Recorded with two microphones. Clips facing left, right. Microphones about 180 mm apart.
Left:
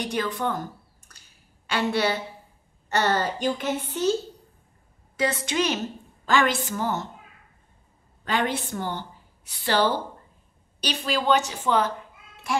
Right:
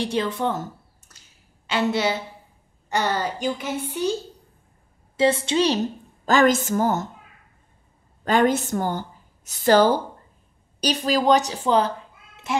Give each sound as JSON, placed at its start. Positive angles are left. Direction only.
{"t": 0.0, "sound": "a woman's voice", "side_deg": -25}
{"t": 5.1, "sound": "a woman's voice", "side_deg": -25}
{"t": 8.3, "sound": "a woman's voice", "side_deg": -45}
{"t": 12.5, "sound": "speech", "side_deg": -25}